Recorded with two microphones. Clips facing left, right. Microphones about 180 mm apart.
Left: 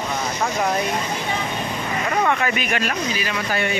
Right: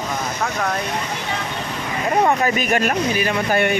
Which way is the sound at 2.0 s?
35° right (ahead or behind).